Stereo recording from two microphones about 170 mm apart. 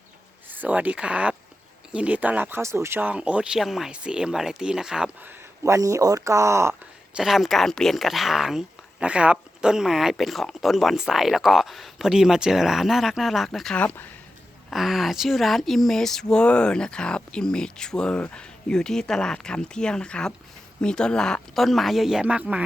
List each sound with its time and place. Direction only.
0.5 s speech: 10° right (ahead or behind)
5.6 s speech: 20° right (ahead or behind)
7.2 s speech: centre (ahead or behind)
14.7 s speech: centre (ahead or behind)